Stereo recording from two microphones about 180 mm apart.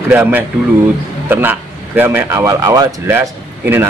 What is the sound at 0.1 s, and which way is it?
A man's voice, 10° right (ahead or behind).